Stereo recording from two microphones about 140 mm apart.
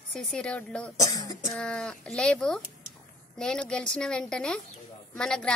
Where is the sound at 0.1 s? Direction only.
5° left (ahead or behind).